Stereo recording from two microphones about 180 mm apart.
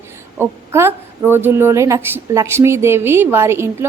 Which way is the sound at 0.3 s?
15° right (ahead or behind).